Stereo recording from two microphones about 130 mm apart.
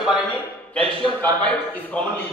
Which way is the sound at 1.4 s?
10° left (ahead or behind).